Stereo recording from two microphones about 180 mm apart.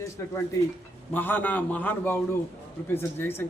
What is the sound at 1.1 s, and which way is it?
A man's voice, 10° left (ahead or behind).